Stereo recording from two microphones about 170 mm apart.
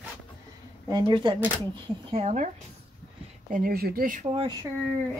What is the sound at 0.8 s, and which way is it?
Speech, 25° right (ahead or behind).